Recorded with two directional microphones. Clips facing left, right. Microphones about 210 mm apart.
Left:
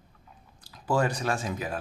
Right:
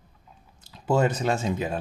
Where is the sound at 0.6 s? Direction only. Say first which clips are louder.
Right 4 dB; 25° right (ahead or behind).